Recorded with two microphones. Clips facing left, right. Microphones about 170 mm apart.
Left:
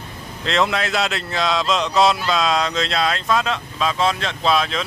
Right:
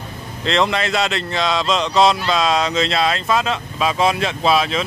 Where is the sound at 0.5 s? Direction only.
Centre (ahead or behind).